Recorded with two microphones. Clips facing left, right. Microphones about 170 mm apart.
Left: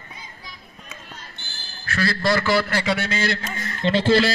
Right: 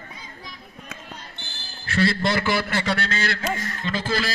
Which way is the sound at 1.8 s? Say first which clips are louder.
Right 1 dB; 25° right (ahead or behind).